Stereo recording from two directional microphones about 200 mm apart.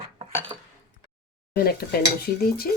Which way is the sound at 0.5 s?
20° right (ahead or behind).